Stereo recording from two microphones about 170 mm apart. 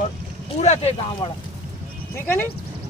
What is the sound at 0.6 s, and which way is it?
Speech, 40° left (ahead or behind).